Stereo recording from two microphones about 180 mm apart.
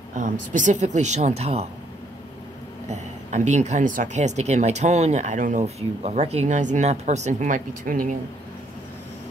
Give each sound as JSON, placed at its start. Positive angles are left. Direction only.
{"t": 0.1, "sound": "speech", "side_deg": -45}
{"t": 2.9, "sound": "speech", "side_deg": -40}